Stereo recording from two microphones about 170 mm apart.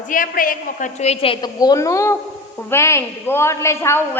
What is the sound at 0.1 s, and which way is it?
A woman's voice, 55° left (ahead or behind).